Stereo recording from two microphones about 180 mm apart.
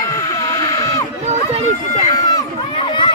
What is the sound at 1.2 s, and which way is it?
Run, 35° right (ahead or behind).